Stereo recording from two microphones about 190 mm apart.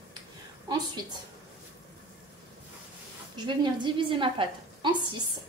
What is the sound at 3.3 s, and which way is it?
A woman's voice, 25° right (ahead or behind).